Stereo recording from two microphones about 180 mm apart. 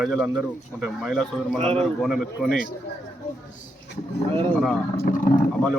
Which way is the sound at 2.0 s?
Centre (ahead or behind).